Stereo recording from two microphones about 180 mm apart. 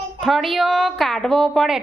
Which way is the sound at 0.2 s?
Centre (ahead or behind).